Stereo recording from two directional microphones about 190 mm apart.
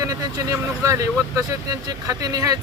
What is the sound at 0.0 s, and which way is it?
Speech, 15° right (ahead or behind).